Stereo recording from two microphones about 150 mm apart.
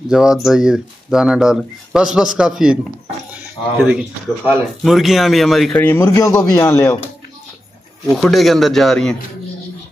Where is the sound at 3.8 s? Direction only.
5° right (ahead or behind).